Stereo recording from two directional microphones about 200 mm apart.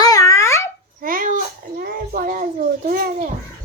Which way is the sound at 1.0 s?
45° right (ahead or behind).